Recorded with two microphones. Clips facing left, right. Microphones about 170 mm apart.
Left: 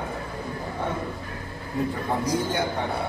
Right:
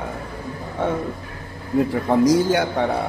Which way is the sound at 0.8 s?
90° right.